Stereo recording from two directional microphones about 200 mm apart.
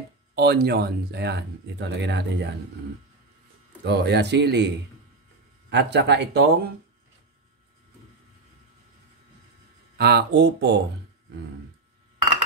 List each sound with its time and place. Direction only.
0.4 s speech: 55° right (ahead or behind)
3.8 s speech: 55° right (ahead or behind)
9.9 s speech: 55° right (ahead or behind)